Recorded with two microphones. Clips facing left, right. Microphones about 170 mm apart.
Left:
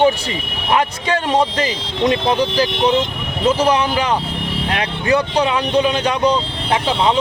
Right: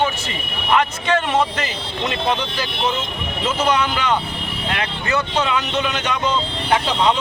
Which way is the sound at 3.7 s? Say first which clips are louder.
Left 3 dB; 35° left (ahead or behind).